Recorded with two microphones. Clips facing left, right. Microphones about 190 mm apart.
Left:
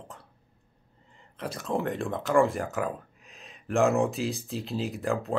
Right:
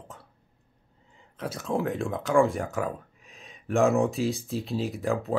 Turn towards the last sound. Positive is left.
turn(degrees=0)  # may be behind; listen again after turning